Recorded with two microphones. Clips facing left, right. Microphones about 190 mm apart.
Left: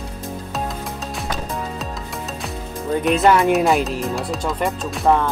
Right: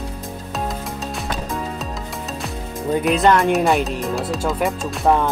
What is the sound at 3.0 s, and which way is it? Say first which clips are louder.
Speech: left 1 dB; centre (ahead or behind).